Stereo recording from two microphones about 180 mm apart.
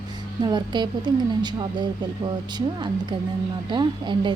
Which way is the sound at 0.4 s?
25° right (ahead or behind).